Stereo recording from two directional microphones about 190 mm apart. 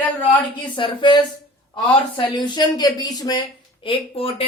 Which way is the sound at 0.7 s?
25° left (ahead or behind).